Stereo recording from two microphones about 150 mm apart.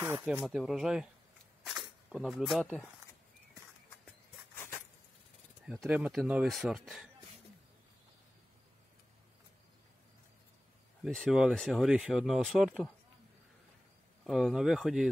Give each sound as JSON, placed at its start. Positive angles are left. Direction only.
{"t": 0.2, "sound": "speech", "side_deg": -5}
{"t": 4.6, "sound": "a sound", "side_deg": 15}
{"t": 5.7, "sound": "speech", "side_deg": -5}
{"t": 11.1, "sound": "speech", "side_deg": 0}
{"t": 14.2, "sound": "speech", "side_deg": 0}